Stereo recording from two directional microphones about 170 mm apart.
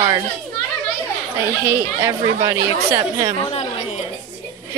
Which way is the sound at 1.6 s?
15° right (ahead or behind).